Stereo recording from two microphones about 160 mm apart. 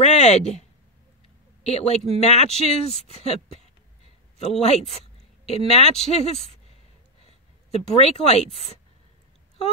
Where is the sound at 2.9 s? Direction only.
40° left (ahead or behind).